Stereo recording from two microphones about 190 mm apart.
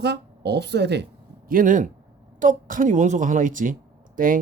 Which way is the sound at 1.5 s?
45° right (ahead or behind).